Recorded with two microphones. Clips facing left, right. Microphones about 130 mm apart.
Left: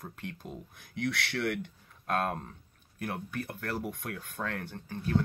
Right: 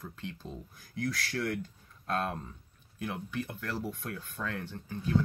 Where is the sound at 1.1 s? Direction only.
65° left (ahead or behind).